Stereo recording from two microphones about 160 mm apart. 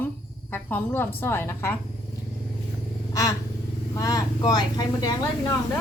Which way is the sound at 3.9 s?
20° left (ahead or behind).